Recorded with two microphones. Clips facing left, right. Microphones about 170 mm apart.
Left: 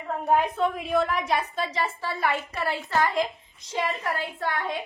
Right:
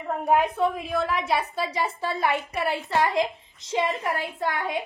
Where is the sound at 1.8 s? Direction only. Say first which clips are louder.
Right 2 dB; 15° right (ahead or behind).